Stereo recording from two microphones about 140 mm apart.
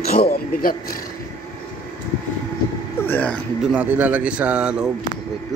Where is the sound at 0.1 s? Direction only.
90° left.